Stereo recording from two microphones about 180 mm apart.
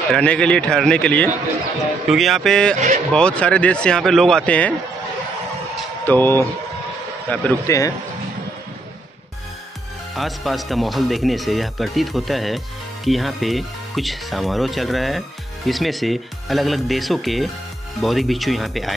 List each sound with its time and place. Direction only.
0.1 s speech: 5° left (ahead or behind)
6.0 s a man's voice: 10° left (ahead or behind)
10.1 s speech: centre (ahead or behind)